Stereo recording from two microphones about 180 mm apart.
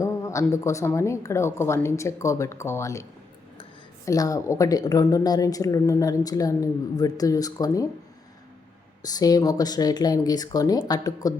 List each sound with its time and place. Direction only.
0.0 s a woman's voice: 15° left (ahead or behind)
9.0 s a woman's voice: 20° left (ahead or behind)